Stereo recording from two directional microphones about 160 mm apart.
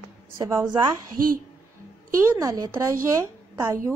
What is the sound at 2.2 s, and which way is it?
A woman's voice, 20° right (ahead or behind).